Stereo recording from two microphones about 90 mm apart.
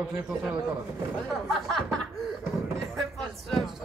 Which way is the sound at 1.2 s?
5° left (ahead or behind).